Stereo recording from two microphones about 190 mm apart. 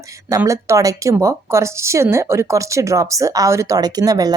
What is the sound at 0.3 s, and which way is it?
A woman's voice, 15° right (ahead or behind).